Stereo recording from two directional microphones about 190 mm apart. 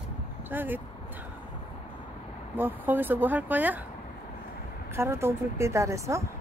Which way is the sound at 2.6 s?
10° right (ahead or behind).